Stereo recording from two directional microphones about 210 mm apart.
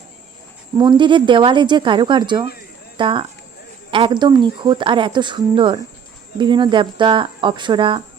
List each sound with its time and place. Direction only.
0.8 s speech: 20° right (ahead or behind)